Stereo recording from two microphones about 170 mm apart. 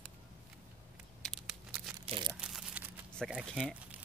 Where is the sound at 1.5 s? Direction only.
5° right (ahead or behind).